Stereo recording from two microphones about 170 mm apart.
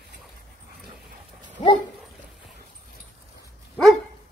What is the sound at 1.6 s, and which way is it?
Dog, 40° left (ahead or behind).